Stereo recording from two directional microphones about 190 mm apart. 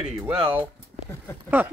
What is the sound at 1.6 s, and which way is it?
Speech, 10° right (ahead or behind).